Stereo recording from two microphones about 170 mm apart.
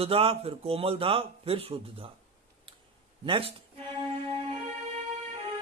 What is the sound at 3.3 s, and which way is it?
Speech, 30° right (ahead or behind).